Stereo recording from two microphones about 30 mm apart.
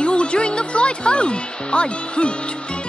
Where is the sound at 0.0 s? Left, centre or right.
Left.